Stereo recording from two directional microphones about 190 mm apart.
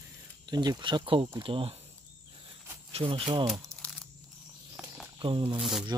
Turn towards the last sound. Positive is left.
turn(degrees=0)  # may be behind; listen again after turning